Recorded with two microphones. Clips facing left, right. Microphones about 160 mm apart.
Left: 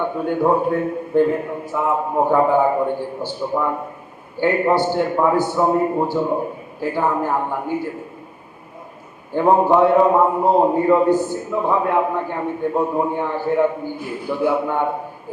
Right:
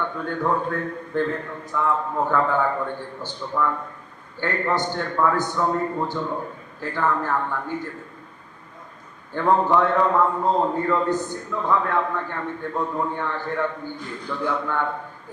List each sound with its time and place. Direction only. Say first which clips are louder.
0.2 s a man's voice: left 7 dB; 15° left (ahead or behind)
3.6 s a man's voice: left 2 dB; 20° left (ahead or behind)
6.1 s a man's voice: left 7 dB; 10° left (ahead or behind)
9.3 s a man's voice: left 5 dB; 15° left (ahead or behind)
10.4 s a man's voice: left 6 dB; 10° left (ahead or behind)